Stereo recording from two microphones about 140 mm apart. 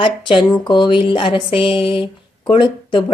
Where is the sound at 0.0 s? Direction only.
35° left (ahead or behind).